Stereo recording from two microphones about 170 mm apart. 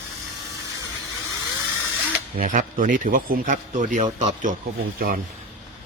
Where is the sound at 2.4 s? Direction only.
50° right (ahead or behind).